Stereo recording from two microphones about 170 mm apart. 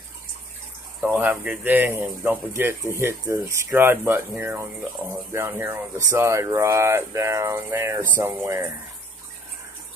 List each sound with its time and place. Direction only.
1.0 s speech: 10° right (ahead or behind)